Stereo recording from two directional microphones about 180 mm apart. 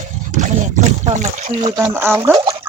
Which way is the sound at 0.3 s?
45° right (ahead or behind).